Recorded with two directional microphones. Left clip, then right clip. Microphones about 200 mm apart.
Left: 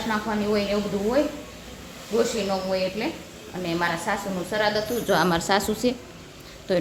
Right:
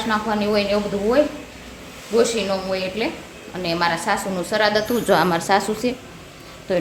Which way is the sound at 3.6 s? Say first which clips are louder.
Right 5 dB; 20° right (ahead or behind).